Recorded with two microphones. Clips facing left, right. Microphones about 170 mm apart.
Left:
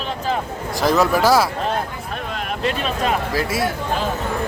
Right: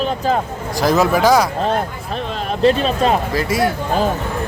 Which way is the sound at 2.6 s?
30° right (ahead or behind).